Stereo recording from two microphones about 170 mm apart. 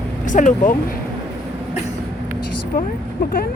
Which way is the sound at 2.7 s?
55° left (ahead or behind).